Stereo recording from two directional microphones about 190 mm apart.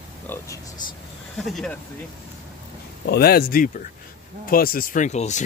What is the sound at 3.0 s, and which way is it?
Speech, 55° left (ahead or behind).